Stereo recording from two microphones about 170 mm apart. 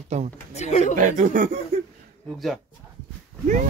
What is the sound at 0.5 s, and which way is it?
Speech, 40° left (ahead or behind).